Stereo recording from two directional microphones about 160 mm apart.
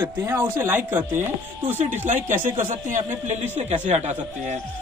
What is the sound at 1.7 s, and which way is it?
A man's voice, 45° right (ahead or behind).